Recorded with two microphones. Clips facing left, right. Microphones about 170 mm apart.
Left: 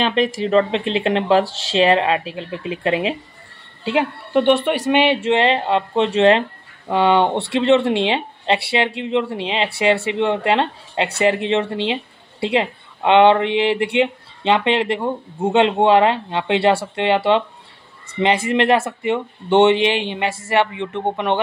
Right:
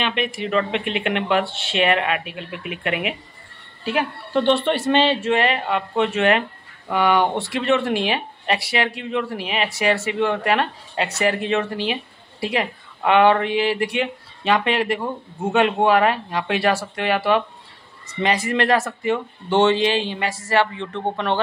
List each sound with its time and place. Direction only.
0.0 s speech: 35° left (ahead or behind); by 21.4 s 20° left (ahead or behind)